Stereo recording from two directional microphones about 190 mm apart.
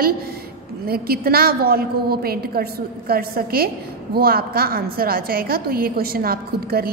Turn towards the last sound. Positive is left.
turn(degrees=-50)  # may be behind; listen again after turning